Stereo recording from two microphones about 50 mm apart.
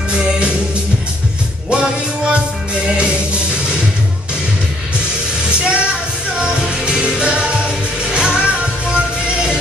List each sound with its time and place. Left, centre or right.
0.1 s music: centre
1.7 s music: centre
5.5 s a sound: right
6.3 s music: centre